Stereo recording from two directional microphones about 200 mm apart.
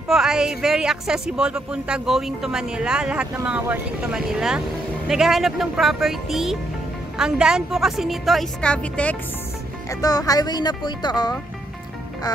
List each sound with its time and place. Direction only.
0.1 s speech: centre (ahead or behind)
9.8 s speech: 20° left (ahead or behind)